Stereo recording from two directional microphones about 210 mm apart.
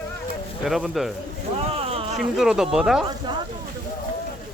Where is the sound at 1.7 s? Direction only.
25° right (ahead or behind).